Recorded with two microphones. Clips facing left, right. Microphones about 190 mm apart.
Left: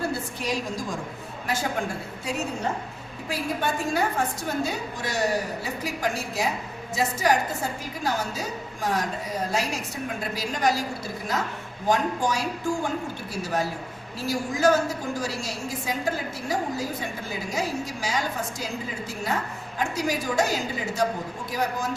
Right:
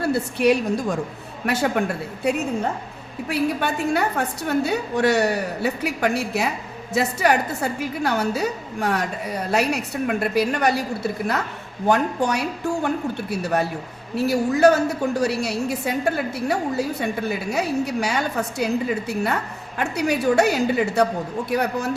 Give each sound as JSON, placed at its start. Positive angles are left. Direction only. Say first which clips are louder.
{"t": 0.0, "sound": "a woman's voice", "louder": "right 10 dB", "side_deg": -70}